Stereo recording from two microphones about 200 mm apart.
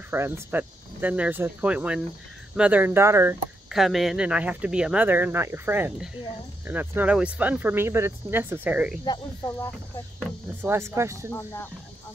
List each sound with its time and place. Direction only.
0.1 s speech: 10° right (ahead or behind)
3.7 s speech: centre (ahead or behind)
9.0 s speech: 20° left (ahead or behind)
10.7 s speech: 15° right (ahead or behind)